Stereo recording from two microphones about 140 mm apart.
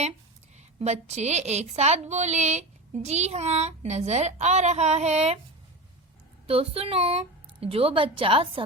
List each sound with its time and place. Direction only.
0.5 s a woman's voice: 50° right (ahead or behind)
6.5 s a woman's voice: 45° right (ahead or behind)